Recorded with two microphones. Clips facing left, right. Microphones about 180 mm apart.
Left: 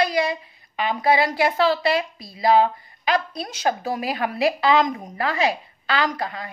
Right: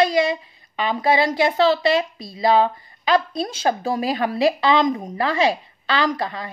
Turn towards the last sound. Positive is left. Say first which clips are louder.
# right 3 dB
turn(degrees=-30)  # may be behind; listen again after turning